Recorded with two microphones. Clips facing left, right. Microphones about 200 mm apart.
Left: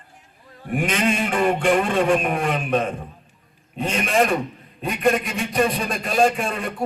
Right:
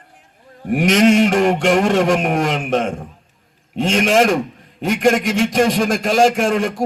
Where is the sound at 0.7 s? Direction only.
80° right.